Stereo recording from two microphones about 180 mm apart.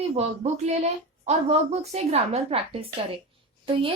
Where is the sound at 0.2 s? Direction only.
35° right (ahead or behind).